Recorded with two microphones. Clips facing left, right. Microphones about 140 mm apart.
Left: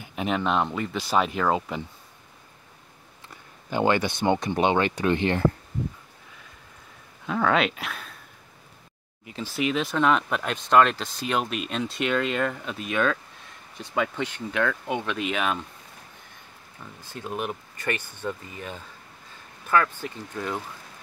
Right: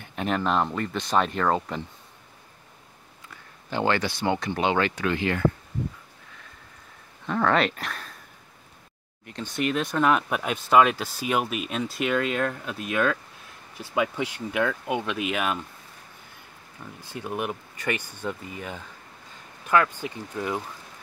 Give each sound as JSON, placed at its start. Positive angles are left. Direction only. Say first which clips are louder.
{"t": 0.0, "sound": "speech", "louder": "even", "side_deg": 5}
{"t": 3.7, "sound": "speech", "louder": "left 2 dB", "side_deg": 15}
{"t": 7.2, "sound": "speech", "louder": "even", "side_deg": 0}
{"t": 9.2, "sound": "speech", "louder": "even", "side_deg": 5}
{"t": 17.0, "sound": "speech", "louder": "right 1 dB", "side_deg": -15}